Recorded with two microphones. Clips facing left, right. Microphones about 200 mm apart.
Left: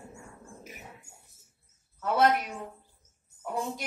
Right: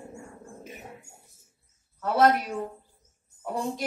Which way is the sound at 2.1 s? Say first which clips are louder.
Right 3 dB; 40° right (ahead or behind).